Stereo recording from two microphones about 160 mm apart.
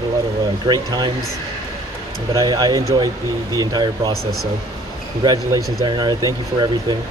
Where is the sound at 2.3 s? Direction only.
25° right (ahead or behind).